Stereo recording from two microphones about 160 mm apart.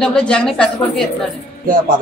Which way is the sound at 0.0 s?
5° left (ahead or behind).